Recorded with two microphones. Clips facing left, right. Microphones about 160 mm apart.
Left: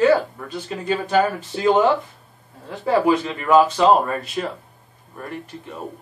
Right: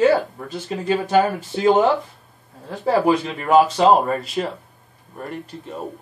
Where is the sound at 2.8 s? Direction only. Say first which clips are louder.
Even; 40° right (ahead or behind).